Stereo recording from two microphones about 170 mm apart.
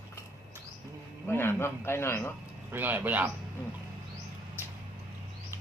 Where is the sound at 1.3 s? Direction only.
15° left (ahead or behind).